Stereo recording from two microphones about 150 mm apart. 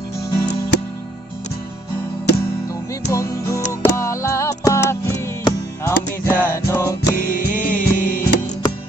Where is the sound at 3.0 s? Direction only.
20° left (ahead or behind).